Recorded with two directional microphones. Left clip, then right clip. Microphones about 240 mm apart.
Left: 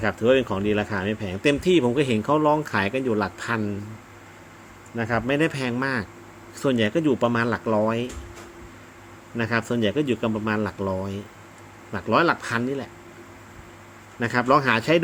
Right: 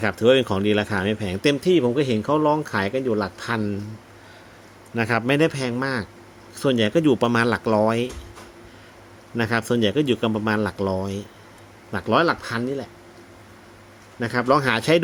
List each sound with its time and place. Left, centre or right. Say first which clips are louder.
0.0 s speech: right 2 dB; centre
1.6 s speech: right 1 dB; centre
4.9 s speech: right 3 dB; right
5.5 s speech: right 1 dB; centre
9.4 s speech: right 2 dB; centre
14.2 s speech: even; centre